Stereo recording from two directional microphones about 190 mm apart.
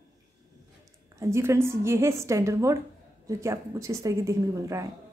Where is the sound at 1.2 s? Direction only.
15° right (ahead or behind).